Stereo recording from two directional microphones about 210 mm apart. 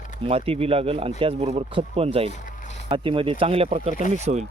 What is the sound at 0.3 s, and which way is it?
Speech, 30° right (ahead or behind).